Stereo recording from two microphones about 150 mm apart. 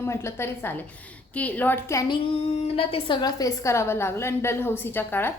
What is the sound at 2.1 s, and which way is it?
A woman's voice, 40° left (ahead or behind).